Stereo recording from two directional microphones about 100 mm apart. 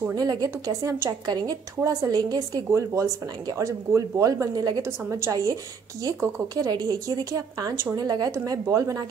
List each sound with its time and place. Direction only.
0.1 s speech: 40° right (ahead or behind)
6.5 s speech: 40° right (ahead or behind)